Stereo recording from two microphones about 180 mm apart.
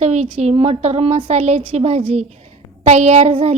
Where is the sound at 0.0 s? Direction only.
35° right (ahead or behind).